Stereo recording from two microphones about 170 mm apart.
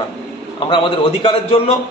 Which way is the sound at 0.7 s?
30° left (ahead or behind).